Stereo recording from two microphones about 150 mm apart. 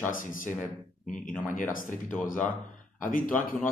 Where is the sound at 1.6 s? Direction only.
60° left (ahead or behind).